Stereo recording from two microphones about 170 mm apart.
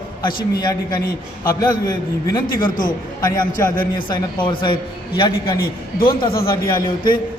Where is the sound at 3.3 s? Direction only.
20° left (ahead or behind).